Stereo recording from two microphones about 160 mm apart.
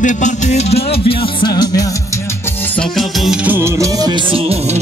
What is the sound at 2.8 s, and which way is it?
Music, centre (ahead or behind).